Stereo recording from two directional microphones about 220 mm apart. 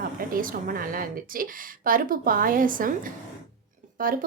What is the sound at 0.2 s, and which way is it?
A woman's voice, 40° right (ahead or behind).